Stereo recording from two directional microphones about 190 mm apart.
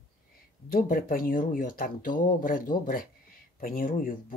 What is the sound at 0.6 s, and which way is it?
Speech, 50° left (ahead or behind).